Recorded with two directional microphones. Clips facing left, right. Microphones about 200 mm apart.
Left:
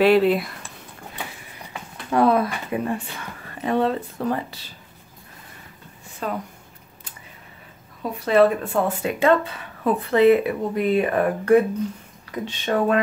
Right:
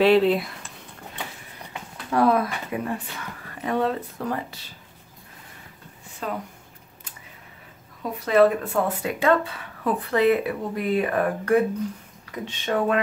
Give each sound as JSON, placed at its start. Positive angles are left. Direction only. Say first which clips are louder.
{"t": 0.0, "sound": "speech", "louder": "left 1 dB", "side_deg": 5}
{"t": 2.0, "sound": "speech", "louder": "left 2 dB", "side_deg": 25}
{"t": 6.2, "sound": "speech", "louder": "left 2 dB", "side_deg": 45}
{"t": 8.3, "sound": "speech", "louder": "left 1 dB", "side_deg": 25}
{"t": 12.4, "sound": "speech", "louder": "left 2 dB", "side_deg": 35}